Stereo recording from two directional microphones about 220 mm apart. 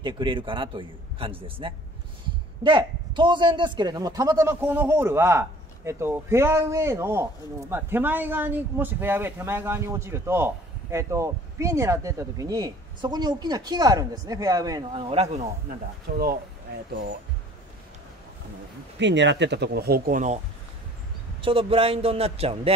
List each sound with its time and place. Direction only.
0.0 s a man's voice: 20° right (ahead or behind)
16.1 s speech: 45° right (ahead or behind)
18.9 s speech: 55° right (ahead or behind); by 20.3 s 35° right (ahead or behind)
21.4 s a man's voice: 25° right (ahead or behind)